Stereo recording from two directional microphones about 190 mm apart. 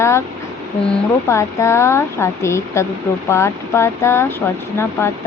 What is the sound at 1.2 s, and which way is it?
Speech, 15° left (ahead or behind).